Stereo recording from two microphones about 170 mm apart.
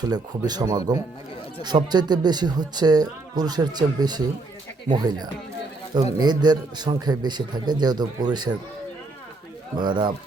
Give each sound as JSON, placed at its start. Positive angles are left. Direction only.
{"t": 0.0, "sound": "speech", "side_deg": -25}
{"t": 9.7, "sound": "speech", "side_deg": -25}